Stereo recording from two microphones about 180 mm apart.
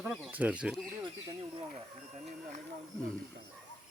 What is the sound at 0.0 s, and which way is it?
Speech, 5° right (ahead or behind).